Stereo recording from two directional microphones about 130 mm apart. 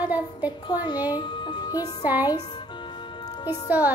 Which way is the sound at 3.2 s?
30° left (ahead or behind).